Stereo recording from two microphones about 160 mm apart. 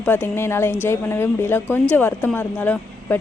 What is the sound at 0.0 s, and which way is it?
Speech, 15° left (ahead or behind).